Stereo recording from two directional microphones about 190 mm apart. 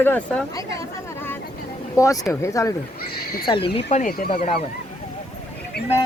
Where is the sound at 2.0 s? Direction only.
15° left (ahead or behind).